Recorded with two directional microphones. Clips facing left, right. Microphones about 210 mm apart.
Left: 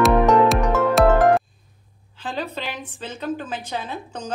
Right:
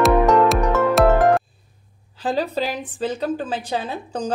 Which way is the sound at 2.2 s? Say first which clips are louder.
Right 7 dB; 35° right (ahead or behind).